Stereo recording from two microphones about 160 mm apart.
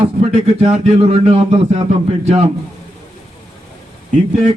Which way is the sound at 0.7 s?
40° right (ahead or behind).